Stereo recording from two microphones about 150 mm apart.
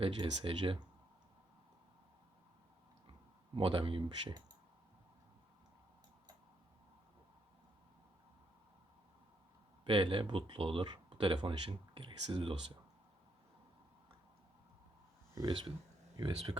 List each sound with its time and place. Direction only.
0.0 s speech: 35° right (ahead or behind)
3.5 s speech: 35° right (ahead or behind)
9.8 s speech: 35° right (ahead or behind)
15.4 s speech: 30° right (ahead or behind)